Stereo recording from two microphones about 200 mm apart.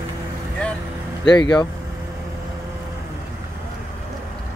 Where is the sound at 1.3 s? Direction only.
20° left (ahead or behind).